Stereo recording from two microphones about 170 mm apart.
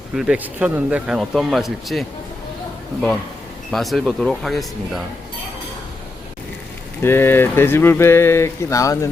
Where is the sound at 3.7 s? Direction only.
Centre (ahead or behind).